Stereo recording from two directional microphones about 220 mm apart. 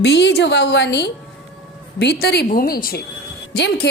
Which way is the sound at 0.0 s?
50° left (ahead or behind).